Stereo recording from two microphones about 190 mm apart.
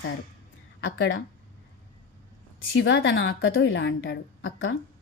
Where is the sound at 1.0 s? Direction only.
90° left.